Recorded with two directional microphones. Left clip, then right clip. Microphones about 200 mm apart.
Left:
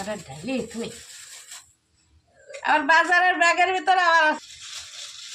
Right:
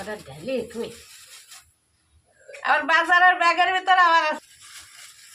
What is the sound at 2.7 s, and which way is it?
A woman's voice, 20° right (ahead or behind).